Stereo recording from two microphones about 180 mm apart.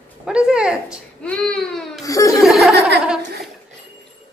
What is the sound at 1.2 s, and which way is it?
Baby cry, 5° left (ahead or behind).